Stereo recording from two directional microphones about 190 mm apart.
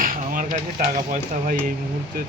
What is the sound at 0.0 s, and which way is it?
Speech, 45° right (ahead or behind).